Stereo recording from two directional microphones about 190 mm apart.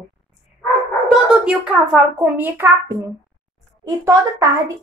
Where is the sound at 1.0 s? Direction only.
5° right (ahead or behind).